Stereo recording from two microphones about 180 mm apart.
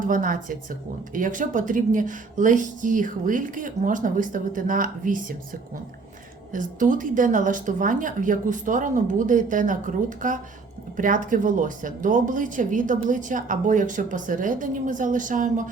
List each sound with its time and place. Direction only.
0.1 s speech: 50° right (ahead or behind)
6.5 s speech: 45° right (ahead or behind)